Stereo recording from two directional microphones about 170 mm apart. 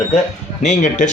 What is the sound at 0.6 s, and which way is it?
Speech, 45° left (ahead or behind).